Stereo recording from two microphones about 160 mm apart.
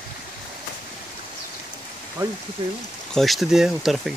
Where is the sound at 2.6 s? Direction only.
30° right (ahead or behind).